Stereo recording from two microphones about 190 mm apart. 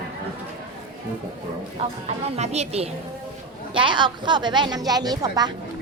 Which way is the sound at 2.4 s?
35° right (ahead or behind).